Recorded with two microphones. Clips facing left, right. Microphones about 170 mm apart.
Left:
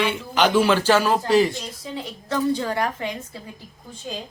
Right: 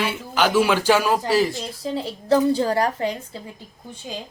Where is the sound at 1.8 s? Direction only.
35° right (ahead or behind).